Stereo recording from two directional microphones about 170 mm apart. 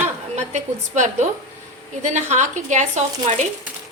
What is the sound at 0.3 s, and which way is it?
Speech, 45° right (ahead or behind).